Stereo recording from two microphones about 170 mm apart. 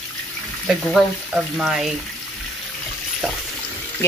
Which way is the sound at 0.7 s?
Centre (ahead or behind).